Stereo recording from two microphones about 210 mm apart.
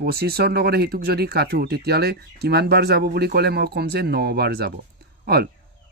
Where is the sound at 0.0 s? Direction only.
50° right (ahead or behind).